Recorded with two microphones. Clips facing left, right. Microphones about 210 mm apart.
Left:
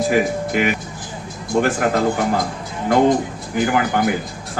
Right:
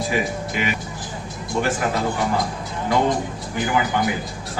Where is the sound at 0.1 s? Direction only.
50° left (ahead or behind).